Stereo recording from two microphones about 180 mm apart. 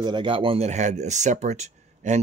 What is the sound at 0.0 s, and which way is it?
Speech, 25° right (ahead or behind).